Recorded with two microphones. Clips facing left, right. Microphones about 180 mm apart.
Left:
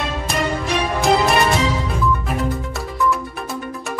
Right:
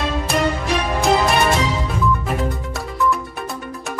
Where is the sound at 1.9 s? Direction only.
Centre (ahead or behind).